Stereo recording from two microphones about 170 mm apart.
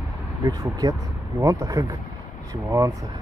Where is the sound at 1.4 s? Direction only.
20° right (ahead or behind).